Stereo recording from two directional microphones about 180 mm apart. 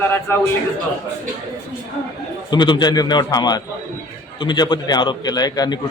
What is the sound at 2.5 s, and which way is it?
A man's voice, 25° left (ahead or behind).